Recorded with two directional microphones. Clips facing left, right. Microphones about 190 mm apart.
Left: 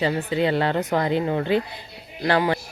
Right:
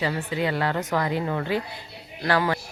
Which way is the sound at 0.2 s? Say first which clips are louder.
Left 4 dB; 30° left (ahead or behind).